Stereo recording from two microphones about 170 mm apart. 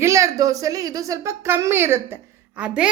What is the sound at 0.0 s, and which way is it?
A woman's voice, 20° right (ahead or behind).